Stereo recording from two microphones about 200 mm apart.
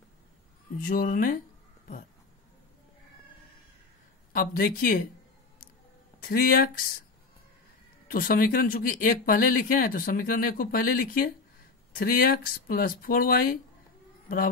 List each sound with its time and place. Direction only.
0.8 s speech: 45° left (ahead or behind)
4.3 s speech: 45° left (ahead or behind)
6.2 s speech: 45° left (ahead or behind)
8.1 s speech: 45° left (ahead or behind)